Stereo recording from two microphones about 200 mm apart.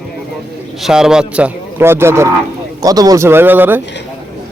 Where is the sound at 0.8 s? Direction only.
5° right (ahead or behind).